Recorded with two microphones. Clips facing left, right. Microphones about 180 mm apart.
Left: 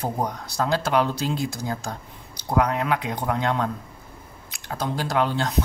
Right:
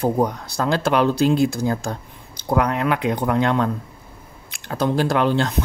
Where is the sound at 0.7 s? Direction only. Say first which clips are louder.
Right 4 dB; 65° right (ahead or behind).